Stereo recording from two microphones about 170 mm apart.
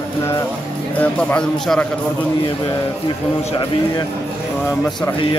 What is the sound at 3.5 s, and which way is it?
Speech, 25° left (ahead or behind).